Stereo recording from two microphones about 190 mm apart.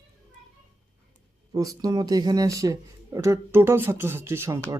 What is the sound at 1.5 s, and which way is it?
Speech, 20° right (ahead or behind).